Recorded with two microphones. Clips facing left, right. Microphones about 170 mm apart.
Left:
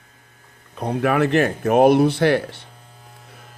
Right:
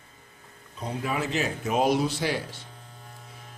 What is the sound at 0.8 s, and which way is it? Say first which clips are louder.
Speech: left 11 dB; 65° left (ahead or behind).